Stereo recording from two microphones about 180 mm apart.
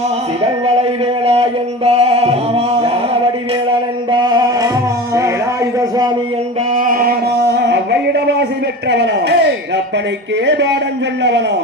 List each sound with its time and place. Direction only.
0.6 s music: 35° right (ahead or behind)
4.1 s music: 25° right (ahead or behind)
6.7 s music: 50° right (ahead or behind); by 8.4 s 65° right (ahead or behind)
8.9 s a sound: 70° right (ahead or behind)